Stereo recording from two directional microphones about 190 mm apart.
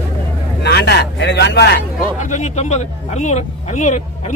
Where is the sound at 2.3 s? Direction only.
35° left (ahead or behind).